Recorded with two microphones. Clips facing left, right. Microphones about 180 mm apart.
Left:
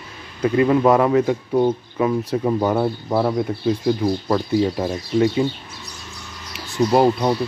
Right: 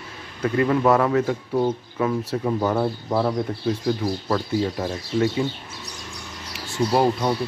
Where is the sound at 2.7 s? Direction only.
5° left (ahead or behind).